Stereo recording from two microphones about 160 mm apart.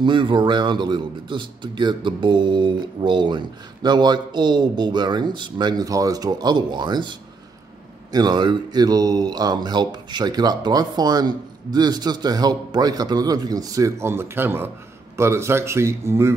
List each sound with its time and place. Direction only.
0.0 s a man's voice: 30° right (ahead or behind)